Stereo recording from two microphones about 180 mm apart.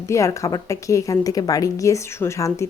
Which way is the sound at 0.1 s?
15° left (ahead or behind).